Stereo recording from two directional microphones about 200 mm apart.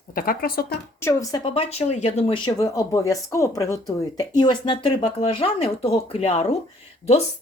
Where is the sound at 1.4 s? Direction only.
30° left (ahead or behind).